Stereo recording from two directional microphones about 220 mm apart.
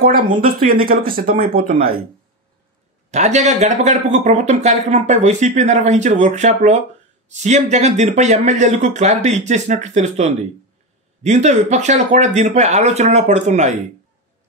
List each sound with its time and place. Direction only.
0.0 s speech: 40° right (ahead or behind)
3.1 s speech: 30° right (ahead or behind)